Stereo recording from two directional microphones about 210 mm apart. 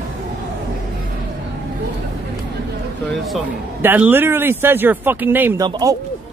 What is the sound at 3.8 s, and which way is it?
Speech, 10° right (ahead or behind).